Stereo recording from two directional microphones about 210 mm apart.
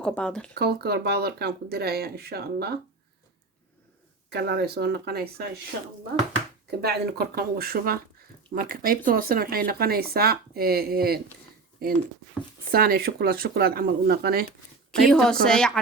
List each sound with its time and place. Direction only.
0.0 s speech: 5° left (ahead or behind)
0.5 s speech: 50° right (ahead or behind)
4.3 s speech: 50° right (ahead or behind)
6.7 s speech: 50° right (ahead or behind)
15.0 s speech: 5° left (ahead or behind)